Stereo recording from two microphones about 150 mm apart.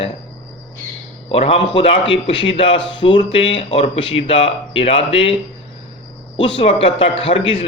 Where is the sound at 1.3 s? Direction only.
40° left (ahead or behind).